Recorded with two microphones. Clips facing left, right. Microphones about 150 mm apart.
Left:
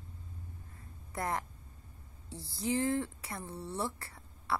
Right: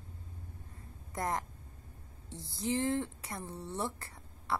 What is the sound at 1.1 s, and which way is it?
Speech, 20° right (ahead or behind).